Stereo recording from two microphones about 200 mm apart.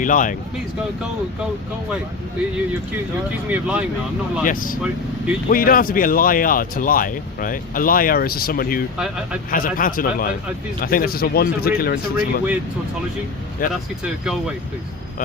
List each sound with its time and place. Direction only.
0.0 s speech: 40° left (ahead or behind)
3.5 s speech: 5° right (ahead or behind)
4.4 s speech: 45° left (ahead or behind)
4.8 s speech: 5° right (ahead or behind)
5.5 s speech: 45° left (ahead or behind)
14.0 s speech: 5° right (ahead or behind)